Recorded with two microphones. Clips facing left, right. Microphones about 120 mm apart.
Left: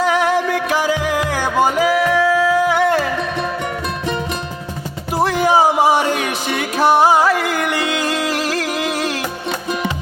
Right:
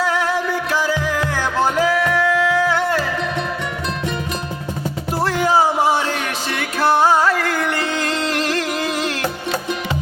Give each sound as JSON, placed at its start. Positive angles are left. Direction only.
{"t": 0.0, "sound": "music", "side_deg": 15}
{"t": 5.1, "sound": "music", "side_deg": 15}